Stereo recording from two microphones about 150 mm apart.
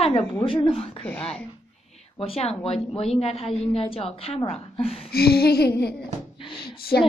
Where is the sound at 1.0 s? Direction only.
10° left (ahead or behind).